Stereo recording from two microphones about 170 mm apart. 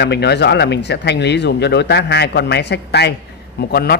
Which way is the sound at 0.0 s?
80° left.